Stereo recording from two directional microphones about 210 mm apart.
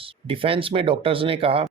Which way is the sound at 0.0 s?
25° right (ahead or behind).